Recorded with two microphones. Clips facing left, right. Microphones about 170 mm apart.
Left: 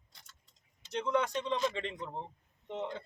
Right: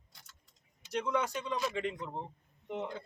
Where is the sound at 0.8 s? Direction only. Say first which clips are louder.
Left 1 dB; 10° right (ahead or behind).